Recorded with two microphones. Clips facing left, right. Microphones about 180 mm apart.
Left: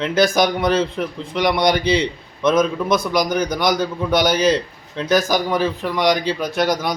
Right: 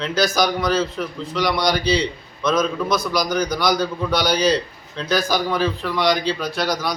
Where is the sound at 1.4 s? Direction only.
20° left (ahead or behind).